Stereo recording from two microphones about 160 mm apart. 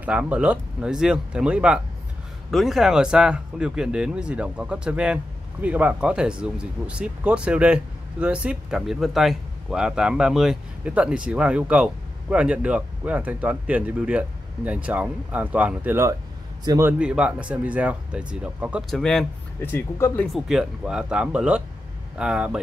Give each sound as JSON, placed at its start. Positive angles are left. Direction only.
{"t": 0.0, "sound": "a man's voice", "side_deg": -5}
{"t": 17.0, "sound": "speech", "side_deg": -5}
{"t": 19.7, "sound": "speech", "side_deg": 15}
{"t": 20.3, "sound": "speech", "side_deg": -5}